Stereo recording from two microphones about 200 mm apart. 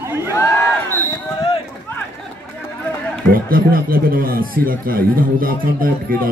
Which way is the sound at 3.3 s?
45° right (ahead or behind).